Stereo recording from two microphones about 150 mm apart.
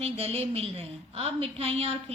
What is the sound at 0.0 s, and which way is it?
A woman's voice, 40° right (ahead or behind).